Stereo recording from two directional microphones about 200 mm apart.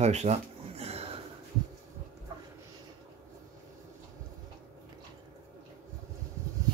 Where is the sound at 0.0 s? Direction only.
35° right (ahead or behind).